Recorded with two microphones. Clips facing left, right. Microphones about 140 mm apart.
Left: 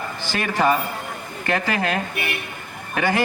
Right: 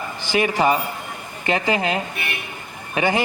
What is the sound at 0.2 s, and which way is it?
A man's voice, 15° right (ahead or behind).